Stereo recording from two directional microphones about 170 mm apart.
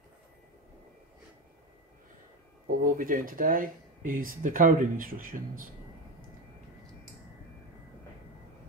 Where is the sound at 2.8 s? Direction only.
55° right (ahead or behind).